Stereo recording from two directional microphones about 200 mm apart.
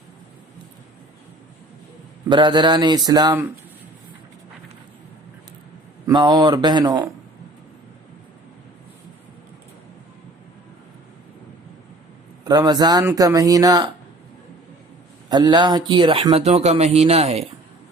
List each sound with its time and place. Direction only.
2.3 s speech: 25° right (ahead or behind)
6.1 s speech: 20° right (ahead or behind)
12.5 s speech: 20° right (ahead or behind)
15.3 s speech: 20° right (ahead or behind)